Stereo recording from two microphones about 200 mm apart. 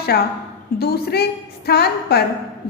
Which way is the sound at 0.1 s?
55° left (ahead or behind).